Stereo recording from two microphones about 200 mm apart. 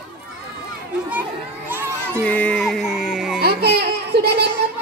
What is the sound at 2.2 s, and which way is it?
Music, 5° left (ahead or behind).